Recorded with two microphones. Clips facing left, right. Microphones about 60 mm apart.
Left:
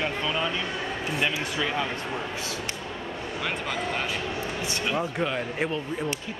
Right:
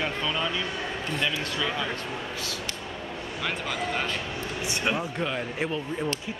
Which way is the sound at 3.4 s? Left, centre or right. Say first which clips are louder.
Even; centre.